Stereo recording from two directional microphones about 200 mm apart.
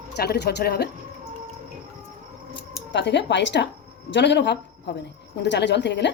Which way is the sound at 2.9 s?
60° left (ahead or behind).